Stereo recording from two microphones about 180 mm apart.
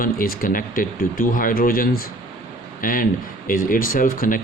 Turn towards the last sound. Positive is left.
turn(degrees=50)  # may be behind; listen again after turning